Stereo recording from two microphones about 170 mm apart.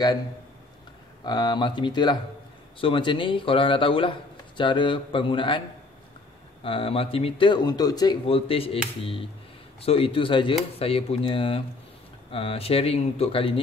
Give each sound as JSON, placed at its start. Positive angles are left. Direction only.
{"t": 1.2, "sound": "a man's voice", "side_deg": 25}
{"t": 6.6, "sound": "speech", "side_deg": 30}